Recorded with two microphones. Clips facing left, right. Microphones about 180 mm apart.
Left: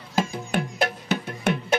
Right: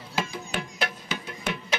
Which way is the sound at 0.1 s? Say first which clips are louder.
Left 6 dB; 50° left (ahead or behind).